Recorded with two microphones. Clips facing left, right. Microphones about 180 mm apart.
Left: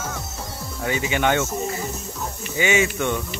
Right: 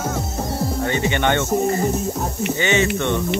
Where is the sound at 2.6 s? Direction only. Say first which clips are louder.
Even; 10° left (ahead or behind).